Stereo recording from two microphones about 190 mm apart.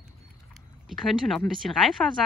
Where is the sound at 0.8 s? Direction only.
Centre (ahead or behind).